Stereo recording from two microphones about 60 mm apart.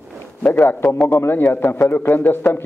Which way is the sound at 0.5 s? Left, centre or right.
Left.